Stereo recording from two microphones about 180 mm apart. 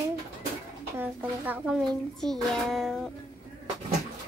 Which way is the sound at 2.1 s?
Centre (ahead or behind).